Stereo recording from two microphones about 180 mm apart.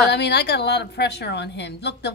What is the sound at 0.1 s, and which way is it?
A woman's voice, 70° left (ahead or behind).